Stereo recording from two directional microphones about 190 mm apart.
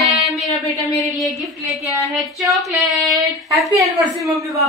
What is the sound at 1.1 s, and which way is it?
A woman's voice, centre (ahead or behind).